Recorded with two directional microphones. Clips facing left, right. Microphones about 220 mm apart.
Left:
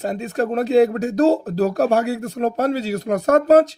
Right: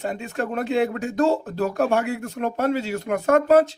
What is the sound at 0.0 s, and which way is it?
Speech, 35° left (ahead or behind).